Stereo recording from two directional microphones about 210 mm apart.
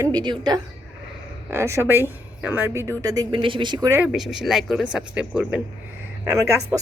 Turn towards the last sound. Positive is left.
turn(degrees=-15)  # may be behind; listen again after turning